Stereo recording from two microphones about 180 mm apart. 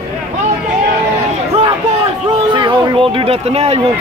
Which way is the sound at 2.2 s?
25° right (ahead or behind).